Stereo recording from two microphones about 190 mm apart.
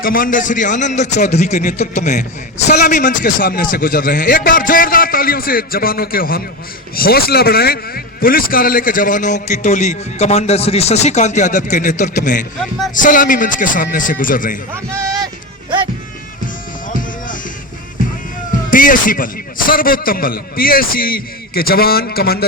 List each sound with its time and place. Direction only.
0.0 s a man's voice: 45° left (ahead or behind)
14.8 s a sound: 15° right (ahead or behind)
16.9 s music: 45° left (ahead or behind)
18.7 s a man's voice: 45° left (ahead or behind)